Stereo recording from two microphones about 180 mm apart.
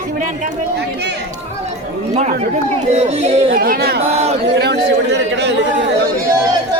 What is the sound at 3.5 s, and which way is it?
Speech, 55° right (ahead or behind).